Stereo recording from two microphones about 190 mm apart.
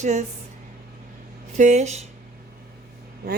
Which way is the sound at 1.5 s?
40° right (ahead or behind).